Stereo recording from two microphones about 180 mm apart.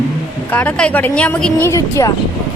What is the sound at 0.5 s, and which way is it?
A woman's voice, 10° left (ahead or behind).